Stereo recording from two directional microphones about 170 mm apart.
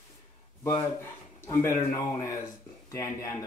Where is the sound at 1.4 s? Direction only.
20° left (ahead or behind).